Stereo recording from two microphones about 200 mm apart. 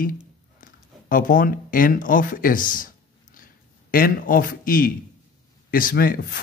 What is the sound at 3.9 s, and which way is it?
A man's voice, 45° left (ahead or behind).